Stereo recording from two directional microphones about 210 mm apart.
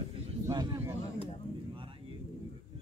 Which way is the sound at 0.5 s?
20° right (ahead or behind).